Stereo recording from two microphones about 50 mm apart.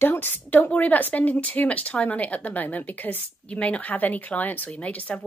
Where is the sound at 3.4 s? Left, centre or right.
Left.